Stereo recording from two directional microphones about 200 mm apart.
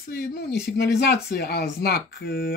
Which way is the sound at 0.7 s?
55° left (ahead or behind).